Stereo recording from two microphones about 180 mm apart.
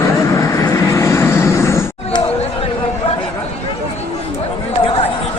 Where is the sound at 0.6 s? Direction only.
15° left (ahead or behind).